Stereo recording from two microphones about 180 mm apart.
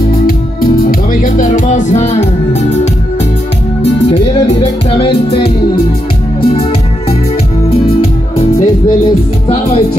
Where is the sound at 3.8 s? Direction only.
40° left (ahead or behind).